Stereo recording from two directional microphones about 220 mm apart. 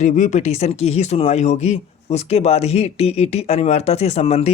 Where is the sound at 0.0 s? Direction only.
35° left (ahead or behind).